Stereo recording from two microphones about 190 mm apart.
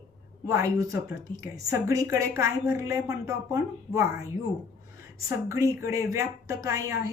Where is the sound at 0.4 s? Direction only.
15° right (ahead or behind).